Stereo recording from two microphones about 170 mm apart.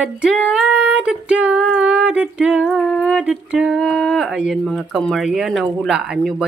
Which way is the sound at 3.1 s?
5° right (ahead or behind).